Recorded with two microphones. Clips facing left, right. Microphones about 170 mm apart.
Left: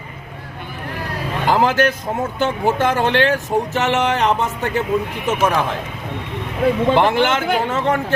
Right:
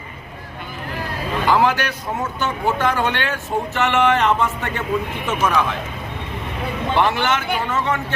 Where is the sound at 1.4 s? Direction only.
45° left (ahead or behind).